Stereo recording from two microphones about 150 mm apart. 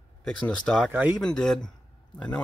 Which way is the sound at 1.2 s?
5° left (ahead or behind).